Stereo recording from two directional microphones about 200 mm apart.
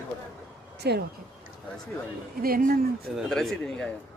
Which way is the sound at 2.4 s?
45° right (ahead or behind).